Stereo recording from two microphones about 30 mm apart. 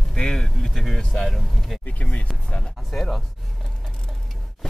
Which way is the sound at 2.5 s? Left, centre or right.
Left.